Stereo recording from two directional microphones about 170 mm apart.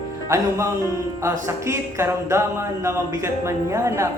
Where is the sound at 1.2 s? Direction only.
15° right (ahead or behind).